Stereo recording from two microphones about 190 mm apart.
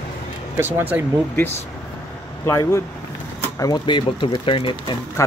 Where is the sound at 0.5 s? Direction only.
10° right (ahead or behind).